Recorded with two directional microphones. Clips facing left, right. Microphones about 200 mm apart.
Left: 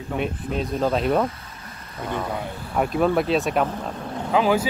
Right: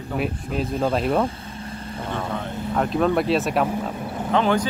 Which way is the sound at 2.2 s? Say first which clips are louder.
Right 1 dB; 5° left (ahead or behind).